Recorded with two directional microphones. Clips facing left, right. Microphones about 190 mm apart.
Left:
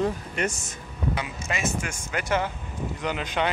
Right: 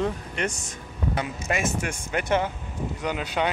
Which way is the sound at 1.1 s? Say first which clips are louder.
Right 4 dB; 50° right (ahead or behind).